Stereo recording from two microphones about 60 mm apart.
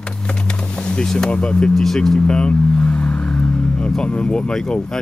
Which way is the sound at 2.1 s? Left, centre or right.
Centre.